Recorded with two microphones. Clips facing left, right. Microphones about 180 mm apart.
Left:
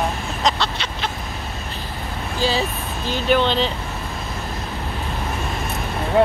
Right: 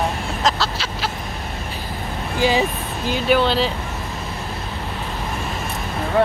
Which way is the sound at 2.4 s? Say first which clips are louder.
Right 3 dB; 15° right (ahead or behind).